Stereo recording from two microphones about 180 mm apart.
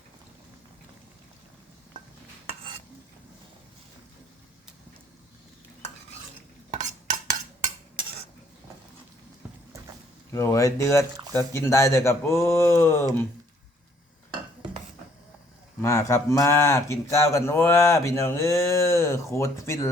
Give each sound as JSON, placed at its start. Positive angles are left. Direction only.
{"t": 6.7, "sound": "stir", "side_deg": -45}
{"t": 10.3, "sound": "speech", "side_deg": 15}
{"t": 15.8, "sound": "speech", "side_deg": 15}